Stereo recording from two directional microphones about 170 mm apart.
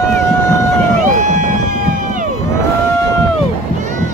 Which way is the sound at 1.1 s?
45° right (ahead or behind).